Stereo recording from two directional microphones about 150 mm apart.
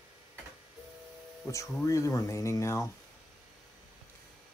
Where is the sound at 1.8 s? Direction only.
20° left (ahead or behind).